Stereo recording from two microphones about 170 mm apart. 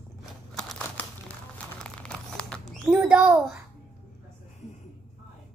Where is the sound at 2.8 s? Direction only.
10° right (ahead or behind).